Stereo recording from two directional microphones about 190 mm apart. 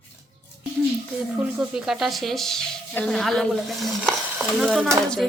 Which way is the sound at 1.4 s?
5° right (ahead or behind).